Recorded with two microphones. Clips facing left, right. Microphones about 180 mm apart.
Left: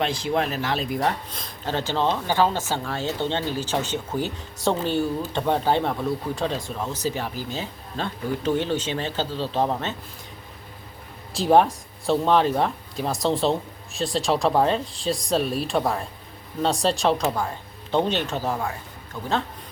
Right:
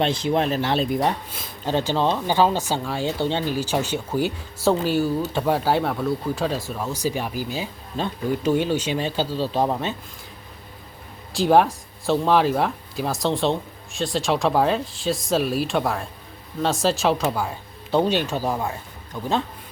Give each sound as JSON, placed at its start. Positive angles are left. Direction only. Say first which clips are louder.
{"t": 0.0, "sound": "speech", "louder": "right 3 dB", "side_deg": -20}
{"t": 1.3, "sound": "speech", "louder": "right 4 dB", "side_deg": -10}
{"t": 11.3, "sound": "speech", "louder": "right 1 dB", "side_deg": 0}